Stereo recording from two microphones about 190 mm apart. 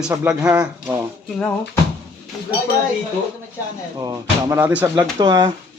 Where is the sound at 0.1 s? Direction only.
5° right (ahead or behind).